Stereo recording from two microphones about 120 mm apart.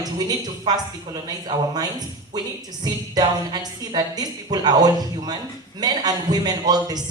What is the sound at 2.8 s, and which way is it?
A woman's voice, 35° right (ahead or behind).